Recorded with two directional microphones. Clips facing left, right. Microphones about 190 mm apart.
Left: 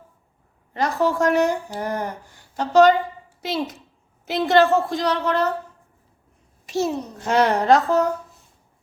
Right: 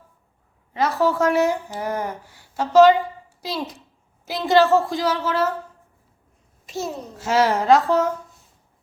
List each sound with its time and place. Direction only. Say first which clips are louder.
0.7 s a woman's voice: right 1 dB; centre (ahead or behind)
4.3 s a woman's voice: even; centre (ahead or behind)
6.7 s a child's voice: left 6 dB; 75° left (ahead or behind)
7.2 s a woman's voice: even; 5° right (ahead or behind)